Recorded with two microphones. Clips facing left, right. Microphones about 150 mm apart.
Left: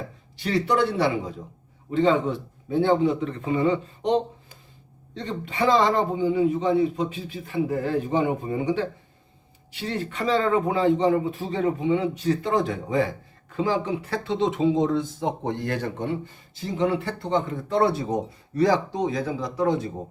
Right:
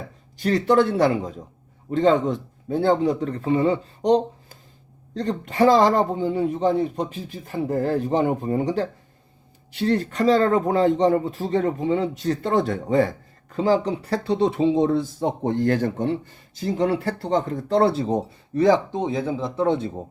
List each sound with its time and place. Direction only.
0.3 s a man's voice: 45° right (ahead or behind); by 19.9 s 25° right (ahead or behind)